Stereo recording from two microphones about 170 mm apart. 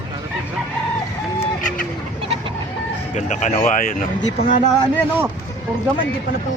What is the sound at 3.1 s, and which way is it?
Speech, 45° left (ahead or behind).